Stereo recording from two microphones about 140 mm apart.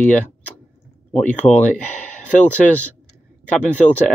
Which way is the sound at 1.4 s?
10° left (ahead or behind).